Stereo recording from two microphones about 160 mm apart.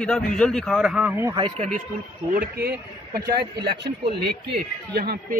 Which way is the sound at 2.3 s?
80° right.